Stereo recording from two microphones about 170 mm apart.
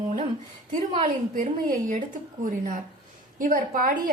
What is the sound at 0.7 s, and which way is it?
A woman's voice, 50° right (ahead or behind).